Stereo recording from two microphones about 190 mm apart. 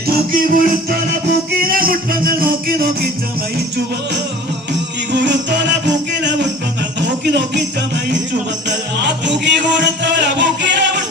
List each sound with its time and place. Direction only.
0.3 s music: 50° right (ahead or behind)
5.1 s music: 65° right (ahead or behind)
9.0 s music: 65° right (ahead or behind)